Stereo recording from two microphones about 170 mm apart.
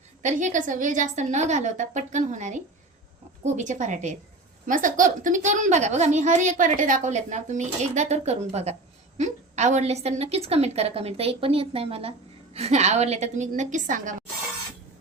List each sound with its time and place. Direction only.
0.2 s a woman's voice: 45° right (ahead or behind)